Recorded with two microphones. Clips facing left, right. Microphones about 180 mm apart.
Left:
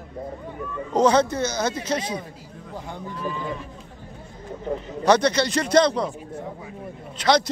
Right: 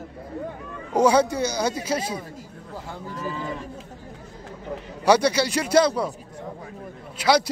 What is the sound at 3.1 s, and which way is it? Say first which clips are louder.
Speech: even; 40° right (ahead or behind).